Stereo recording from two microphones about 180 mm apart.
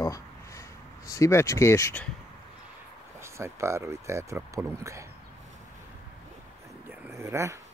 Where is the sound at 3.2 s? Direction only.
15° right (ahead or behind).